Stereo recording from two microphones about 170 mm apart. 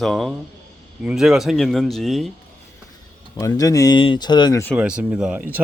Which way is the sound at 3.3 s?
20° left (ahead or behind).